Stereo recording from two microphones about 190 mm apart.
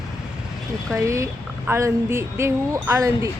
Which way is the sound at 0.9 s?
15° right (ahead or behind).